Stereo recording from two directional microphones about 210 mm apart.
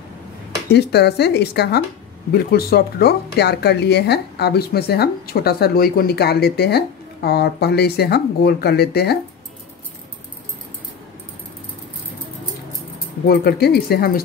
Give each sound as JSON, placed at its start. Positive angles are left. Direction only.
{"t": 0.7, "sound": "speech", "side_deg": 50}
{"t": 13.3, "sound": "speech", "side_deg": 50}